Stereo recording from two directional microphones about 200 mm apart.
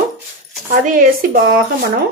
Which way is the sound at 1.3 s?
45° right (ahead or behind).